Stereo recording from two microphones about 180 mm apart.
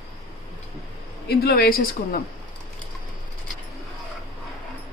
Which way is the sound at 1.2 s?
60° left (ahead or behind).